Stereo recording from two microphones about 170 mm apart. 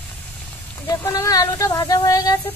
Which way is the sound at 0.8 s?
15° left (ahead or behind).